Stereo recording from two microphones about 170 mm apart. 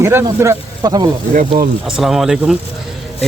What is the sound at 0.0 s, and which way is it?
Speech, 15° right (ahead or behind).